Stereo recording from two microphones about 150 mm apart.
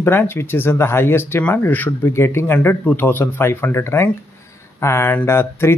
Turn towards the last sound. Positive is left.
turn(degrees=15)  # may be behind; listen again after turning